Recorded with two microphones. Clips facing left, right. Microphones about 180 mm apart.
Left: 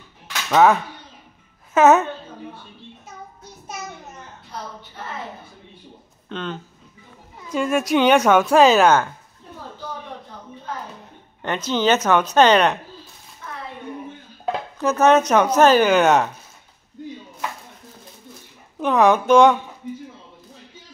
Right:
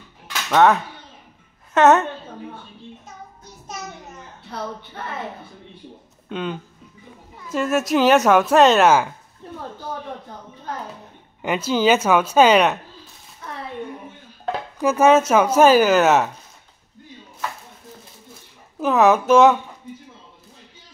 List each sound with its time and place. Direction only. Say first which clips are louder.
0.5 s a woman's voice: even; centre (ahead or behind)
6.2 s speech: right 2 dB; 10° right (ahead or behind)
11.4 s speech: right 2 dB; 10° right (ahead or behind)
13.4 s a sound: right 1 dB; 40° right (ahead or behind)
14.8 s speech: right 1 dB; 10° right (ahead or behind)
18.8 s speech: even; 5° right (ahead or behind)